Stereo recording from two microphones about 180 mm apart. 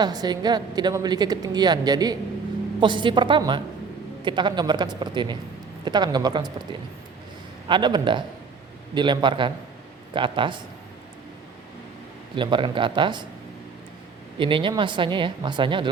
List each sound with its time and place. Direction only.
0.0 s a woman's voice: 20° right (ahead or behind)
7.7 s a woman's voice: 25° right (ahead or behind)
12.4 s a woman's voice: 25° right (ahead or behind)
14.3 s a woman's voice: 30° right (ahead or behind)